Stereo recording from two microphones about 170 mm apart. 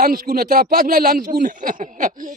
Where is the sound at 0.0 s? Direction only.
60° right (ahead or behind).